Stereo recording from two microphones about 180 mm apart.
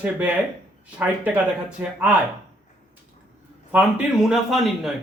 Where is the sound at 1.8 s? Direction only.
10° right (ahead or behind).